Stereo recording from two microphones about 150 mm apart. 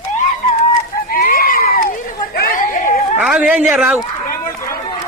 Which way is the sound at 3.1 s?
10° right (ahead or behind).